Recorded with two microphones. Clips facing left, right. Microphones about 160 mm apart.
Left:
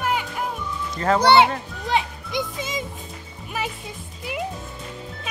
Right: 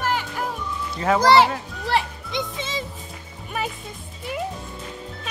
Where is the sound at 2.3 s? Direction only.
25° right (ahead or behind).